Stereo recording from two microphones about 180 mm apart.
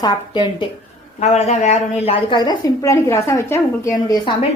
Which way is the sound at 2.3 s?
25° left (ahead or behind).